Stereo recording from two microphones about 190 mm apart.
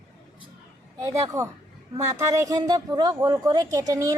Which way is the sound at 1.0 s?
20° right (ahead or behind).